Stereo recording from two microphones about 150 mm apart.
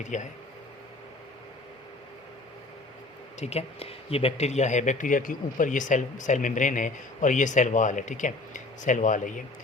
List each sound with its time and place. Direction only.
0.1 s speech: 55° left (ahead or behind)
3.4 s speech: 45° left (ahead or behind); by 9.4 s 60° left (ahead or behind)